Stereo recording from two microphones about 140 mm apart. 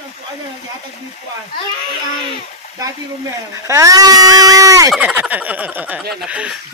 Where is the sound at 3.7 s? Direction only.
25° right (ahead or behind).